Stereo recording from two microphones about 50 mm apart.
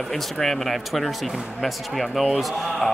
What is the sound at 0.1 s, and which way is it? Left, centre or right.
A man's voice, centre.